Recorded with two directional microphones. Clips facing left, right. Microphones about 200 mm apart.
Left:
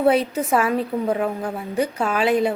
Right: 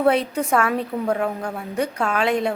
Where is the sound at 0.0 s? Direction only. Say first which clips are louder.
Left 1 dB; 5° left (ahead or behind).